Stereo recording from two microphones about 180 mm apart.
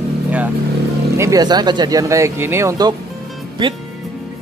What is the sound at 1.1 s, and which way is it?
Speech, 20° right (ahead or behind).